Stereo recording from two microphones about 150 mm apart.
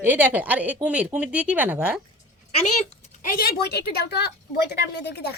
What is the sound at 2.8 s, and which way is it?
Speech, 65° left (ahead or behind).